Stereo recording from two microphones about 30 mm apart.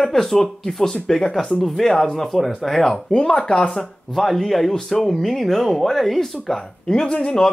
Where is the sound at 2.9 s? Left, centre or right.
Left.